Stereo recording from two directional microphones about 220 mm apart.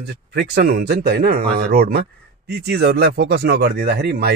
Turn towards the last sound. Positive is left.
turn(degrees=-45)  # may be behind; listen again after turning